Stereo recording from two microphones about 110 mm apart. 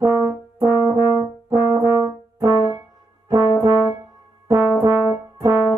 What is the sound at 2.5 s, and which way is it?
Brass instrument, 45° left (ahead or behind).